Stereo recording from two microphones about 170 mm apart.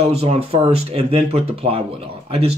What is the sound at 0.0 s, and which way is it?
Speech, 35° right (ahead or behind).